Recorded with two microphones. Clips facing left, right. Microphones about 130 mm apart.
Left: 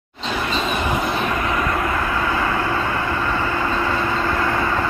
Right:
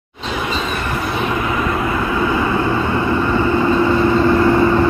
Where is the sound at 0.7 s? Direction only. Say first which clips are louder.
Left 1 dB; 15° left (ahead or behind).